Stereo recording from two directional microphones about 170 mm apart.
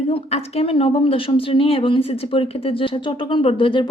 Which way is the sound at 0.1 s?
40° left (ahead or behind).